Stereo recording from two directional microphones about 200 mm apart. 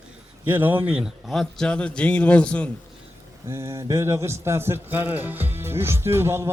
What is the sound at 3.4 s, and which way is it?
A man's voice, 15° right (ahead or behind).